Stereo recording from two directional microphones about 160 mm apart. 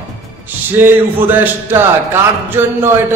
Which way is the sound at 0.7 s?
15° right (ahead or behind).